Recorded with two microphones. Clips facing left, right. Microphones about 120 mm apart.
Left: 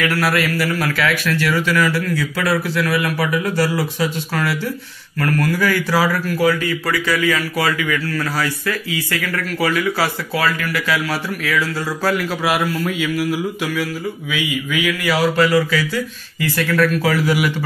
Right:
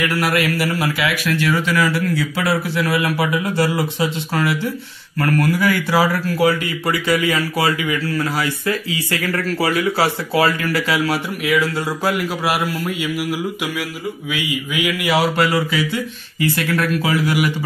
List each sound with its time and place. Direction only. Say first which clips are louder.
0.9 s speech: left 1 dB; 15° right (ahead or behind)
9.3 s speech: right 1 dB; 35° right (ahead or behind); by 12.2 s 15° right (ahead or behind)
12.4 s mantra: left 3 dB; 10° right (ahead or behind)
15.0 s speech: left 1 dB; 25° right (ahead or behind)